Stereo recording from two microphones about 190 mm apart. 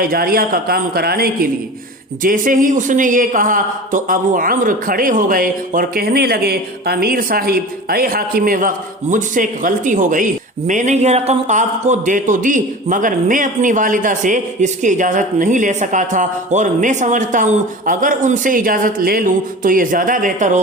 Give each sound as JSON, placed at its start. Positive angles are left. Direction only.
{"t": 0.0, "sound": "a man's voice", "side_deg": -50}